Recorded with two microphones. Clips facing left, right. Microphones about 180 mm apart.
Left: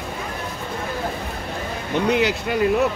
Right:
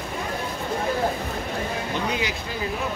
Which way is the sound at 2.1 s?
65° left (ahead or behind).